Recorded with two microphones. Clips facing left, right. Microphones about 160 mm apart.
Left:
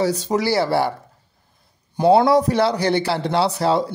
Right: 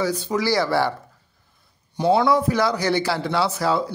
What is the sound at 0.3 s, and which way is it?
Speech, 30° left (ahead or behind).